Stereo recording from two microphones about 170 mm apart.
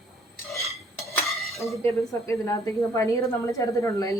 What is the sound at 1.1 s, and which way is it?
Stir, centre (ahead or behind).